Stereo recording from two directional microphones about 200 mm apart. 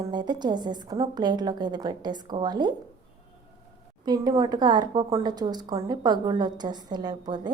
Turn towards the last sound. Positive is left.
turn(degrees=-20)  # may be behind; listen again after turning